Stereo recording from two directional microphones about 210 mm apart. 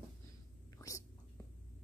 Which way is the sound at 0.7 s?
15° left (ahead or behind).